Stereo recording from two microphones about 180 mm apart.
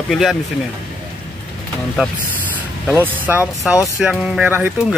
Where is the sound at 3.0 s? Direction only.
10° right (ahead or behind).